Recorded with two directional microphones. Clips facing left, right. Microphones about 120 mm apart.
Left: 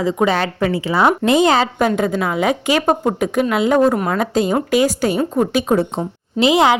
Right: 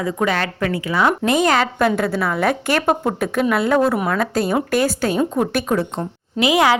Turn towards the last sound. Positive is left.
turn(degrees=25)  # may be behind; listen again after turning